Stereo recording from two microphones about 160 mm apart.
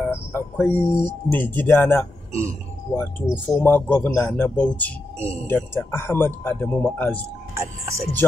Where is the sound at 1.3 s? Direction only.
10° left (ahead or behind).